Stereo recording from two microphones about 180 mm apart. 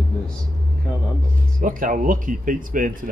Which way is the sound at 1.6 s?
50° right (ahead or behind).